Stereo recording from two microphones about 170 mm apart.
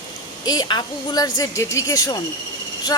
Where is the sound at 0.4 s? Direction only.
25° left (ahead or behind).